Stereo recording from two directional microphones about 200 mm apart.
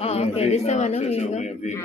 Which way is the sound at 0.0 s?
30° left (ahead or behind).